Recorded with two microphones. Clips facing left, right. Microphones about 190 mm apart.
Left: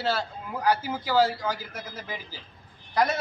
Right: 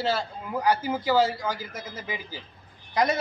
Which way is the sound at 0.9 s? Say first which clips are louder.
Right 3 dB; 10° right (ahead or behind).